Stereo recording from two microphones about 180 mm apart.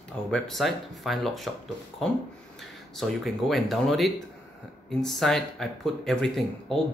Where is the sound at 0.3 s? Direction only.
Centre (ahead or behind).